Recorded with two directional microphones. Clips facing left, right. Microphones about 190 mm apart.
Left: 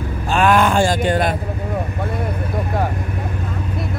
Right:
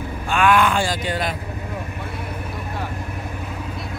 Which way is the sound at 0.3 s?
40° left (ahead or behind).